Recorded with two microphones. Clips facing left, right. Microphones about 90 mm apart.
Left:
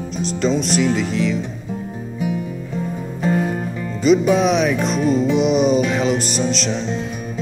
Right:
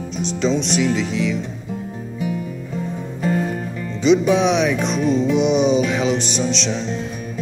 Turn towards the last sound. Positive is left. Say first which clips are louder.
# left 1 dB
turn(degrees=5)  # may be behind; listen again after turning